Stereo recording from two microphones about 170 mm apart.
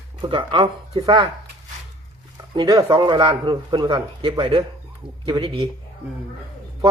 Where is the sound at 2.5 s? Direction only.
20° right (ahead or behind).